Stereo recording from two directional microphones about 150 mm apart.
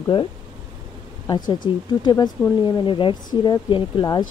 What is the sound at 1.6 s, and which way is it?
Speech, 35° left (ahead or behind).